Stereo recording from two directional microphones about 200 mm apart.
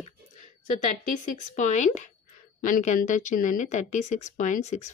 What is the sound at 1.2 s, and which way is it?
Speech, 40° left (ahead or behind).